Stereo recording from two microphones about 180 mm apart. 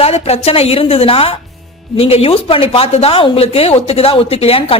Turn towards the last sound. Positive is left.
turn(degrees=30)  # may be behind; listen again after turning